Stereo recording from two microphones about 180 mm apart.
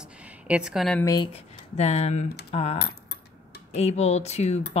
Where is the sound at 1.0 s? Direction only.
25° left (ahead or behind).